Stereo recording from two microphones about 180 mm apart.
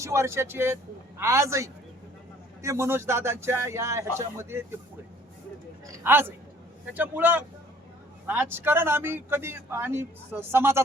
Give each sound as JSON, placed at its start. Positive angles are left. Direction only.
{"t": 0.0, "sound": "speech", "side_deg": -15}
{"t": 5.8, "sound": "a man's voice", "side_deg": -15}